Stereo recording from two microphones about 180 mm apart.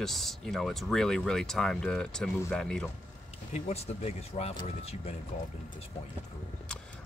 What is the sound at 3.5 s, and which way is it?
Speech, 35° left (ahead or behind).